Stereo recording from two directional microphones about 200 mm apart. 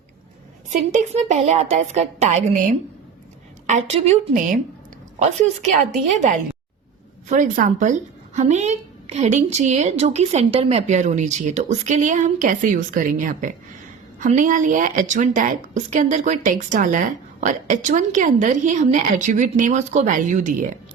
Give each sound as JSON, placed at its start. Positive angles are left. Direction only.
{"t": 0.7, "sound": "a woman's voice", "side_deg": -35}
{"t": 3.7, "sound": "a woman's voice", "side_deg": -35}